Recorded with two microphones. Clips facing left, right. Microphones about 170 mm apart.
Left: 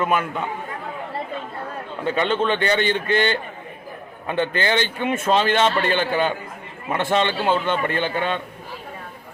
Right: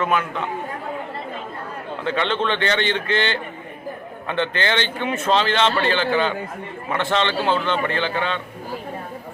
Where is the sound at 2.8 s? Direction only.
45° left (ahead or behind).